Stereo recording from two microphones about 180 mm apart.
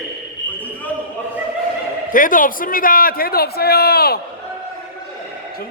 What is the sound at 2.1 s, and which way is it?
A man's voice, 50° left (ahead or behind).